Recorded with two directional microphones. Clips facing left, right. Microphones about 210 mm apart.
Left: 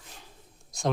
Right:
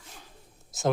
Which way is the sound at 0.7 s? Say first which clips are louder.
Right 2 dB; 5° right (ahead or behind).